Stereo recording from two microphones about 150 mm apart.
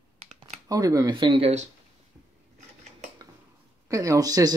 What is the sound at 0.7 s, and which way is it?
Speech, 25° right (ahead or behind).